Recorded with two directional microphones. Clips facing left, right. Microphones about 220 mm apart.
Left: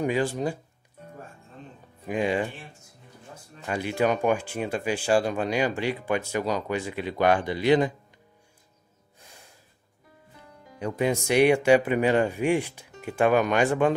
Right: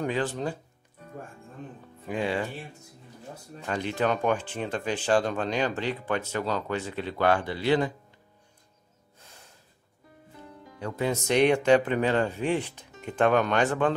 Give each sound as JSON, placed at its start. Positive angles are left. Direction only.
{"t": 0.0, "sound": "speech", "side_deg": 10}
{"t": 2.0, "sound": "speech", "side_deg": 15}
{"t": 3.6, "sound": "speech", "side_deg": 10}
{"t": 10.8, "sound": "speech", "side_deg": 15}